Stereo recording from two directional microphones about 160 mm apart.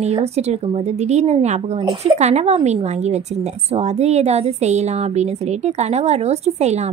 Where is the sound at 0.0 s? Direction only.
40° right (ahead or behind).